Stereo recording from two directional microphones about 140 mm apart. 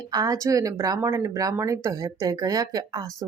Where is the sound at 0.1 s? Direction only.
25° right (ahead or behind).